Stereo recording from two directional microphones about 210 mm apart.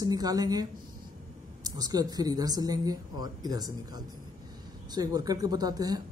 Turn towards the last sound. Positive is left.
turn(degrees=-20)  # may be behind; listen again after turning